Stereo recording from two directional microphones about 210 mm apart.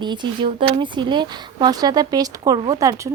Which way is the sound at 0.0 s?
20° right (ahead or behind).